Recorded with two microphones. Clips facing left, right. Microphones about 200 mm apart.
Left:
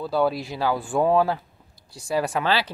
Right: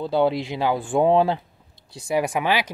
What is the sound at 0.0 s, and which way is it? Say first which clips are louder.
Speech: right 2 dB; 25° right (ahead or behind).